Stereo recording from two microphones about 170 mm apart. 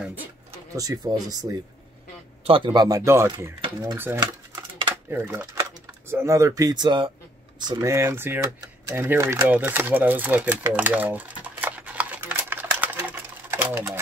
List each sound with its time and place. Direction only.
0.7 s speech: 20° right (ahead or behind)
2.4 s speech: 30° right (ahead or behind)
7.6 s typewriter: 15° right (ahead or behind)